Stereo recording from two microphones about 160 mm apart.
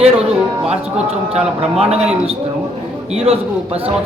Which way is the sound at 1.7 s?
40° right (ahead or behind).